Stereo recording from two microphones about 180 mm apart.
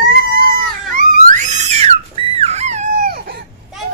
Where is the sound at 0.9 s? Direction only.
45° right (ahead or behind).